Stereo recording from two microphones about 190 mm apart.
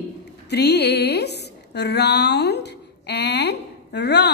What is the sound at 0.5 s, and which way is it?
A woman's voice, 60° left (ahead or behind).